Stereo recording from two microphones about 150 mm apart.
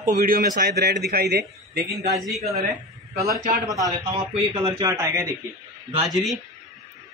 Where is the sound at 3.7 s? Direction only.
25° right (ahead or behind).